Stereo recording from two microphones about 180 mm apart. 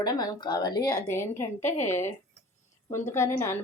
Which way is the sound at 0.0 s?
20° left (ahead or behind).